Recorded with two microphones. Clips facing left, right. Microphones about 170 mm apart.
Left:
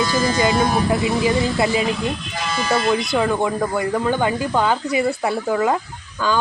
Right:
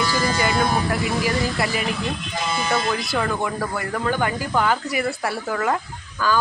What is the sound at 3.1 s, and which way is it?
Speech, 20° left (ahead or behind).